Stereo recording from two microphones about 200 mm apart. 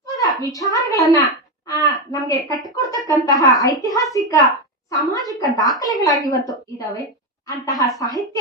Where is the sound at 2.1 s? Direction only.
20° left (ahead or behind).